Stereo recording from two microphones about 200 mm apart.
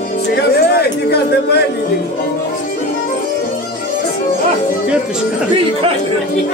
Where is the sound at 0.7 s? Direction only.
55° left (ahead or behind).